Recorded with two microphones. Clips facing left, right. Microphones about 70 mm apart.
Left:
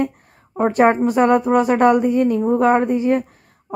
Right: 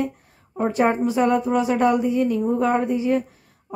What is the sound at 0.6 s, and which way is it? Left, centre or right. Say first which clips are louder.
Speech: left 5 dB; left.